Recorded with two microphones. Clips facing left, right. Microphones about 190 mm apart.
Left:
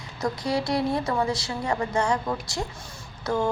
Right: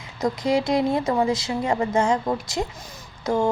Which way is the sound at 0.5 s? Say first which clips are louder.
Right 4 dB; 20° right (ahead or behind).